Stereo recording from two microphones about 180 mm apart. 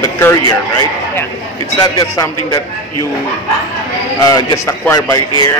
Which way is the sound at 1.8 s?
20° left (ahead or behind).